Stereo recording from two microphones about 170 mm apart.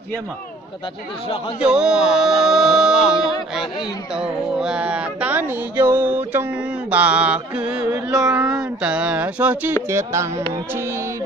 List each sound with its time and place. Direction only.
1.6 s speech: 5° right (ahead or behind)
4.1 s music: 5° right (ahead or behind)
7.8 s music: 20° right (ahead or behind)
8.5 s music: 5° right (ahead or behind)